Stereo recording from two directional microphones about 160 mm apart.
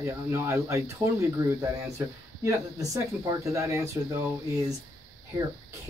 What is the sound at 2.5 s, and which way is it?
Speech, 20° right (ahead or behind).